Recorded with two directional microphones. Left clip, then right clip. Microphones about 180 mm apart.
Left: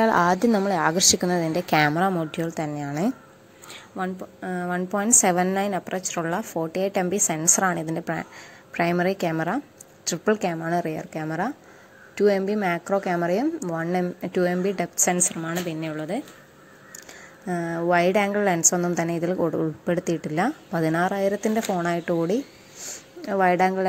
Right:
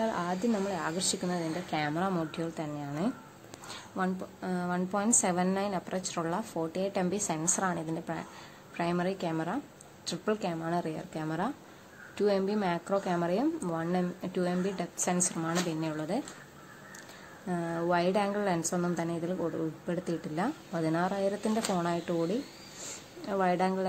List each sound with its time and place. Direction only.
0.0 s a woman's voice: 35° left (ahead or behind)
3.7 s a woman's voice: 10° left (ahead or behind)
17.5 s a woman's voice: 20° left (ahead or behind)